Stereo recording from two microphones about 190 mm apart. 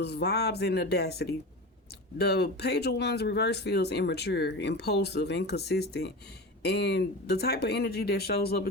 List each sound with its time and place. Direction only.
0.0 s speech: 60° left (ahead or behind)